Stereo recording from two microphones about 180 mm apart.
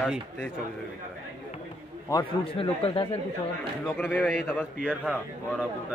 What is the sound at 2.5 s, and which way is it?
Speech, 30° left (ahead or behind).